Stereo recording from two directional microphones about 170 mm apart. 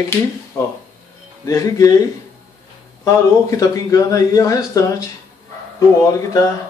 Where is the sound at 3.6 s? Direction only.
20° left (ahead or behind).